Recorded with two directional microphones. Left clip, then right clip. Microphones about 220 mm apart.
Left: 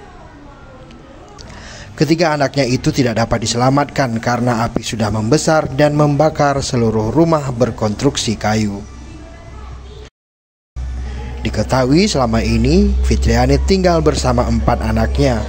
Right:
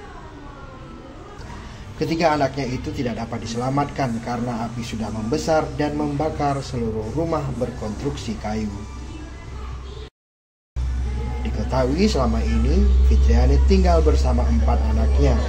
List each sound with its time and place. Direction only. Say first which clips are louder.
2.0 s a man's voice: left 5 dB; 45° left (ahead or behind)
11.4 s a man's voice: left 7 dB; 45° left (ahead or behind)